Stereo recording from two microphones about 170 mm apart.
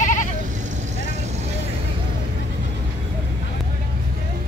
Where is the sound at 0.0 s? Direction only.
50° left (ahead or behind).